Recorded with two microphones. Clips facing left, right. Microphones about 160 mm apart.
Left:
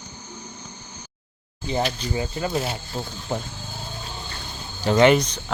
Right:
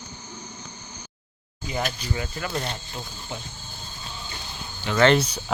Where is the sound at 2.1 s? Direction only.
25° left (ahead or behind).